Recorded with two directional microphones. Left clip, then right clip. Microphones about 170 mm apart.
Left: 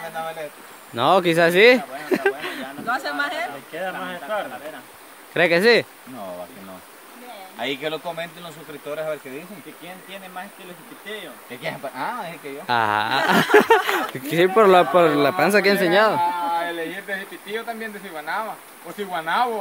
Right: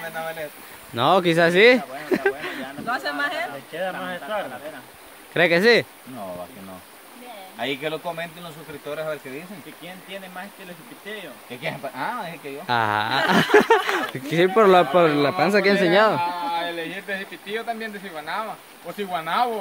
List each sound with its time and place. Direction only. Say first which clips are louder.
0.1 s speech: left 1 dB; 10° left (ahead or behind)
2.9 s speech: left 1 dB; 10° right (ahead or behind)
4.0 s speech: left 1 dB; 20° right (ahead or behind)
5.3 s speech: left 1 dB; centre (ahead or behind)
7.5 s speech: left 1 dB; 5° left (ahead or behind)
11.1 s speech: left 1 dB; 5° right (ahead or behind)
11.8 s speech: left 1 dB; 5° left (ahead or behind)
16.2 s speech: left 3 dB; 25° right (ahead or behind)